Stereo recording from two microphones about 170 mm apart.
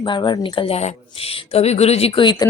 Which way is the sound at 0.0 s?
25° left (ahead or behind).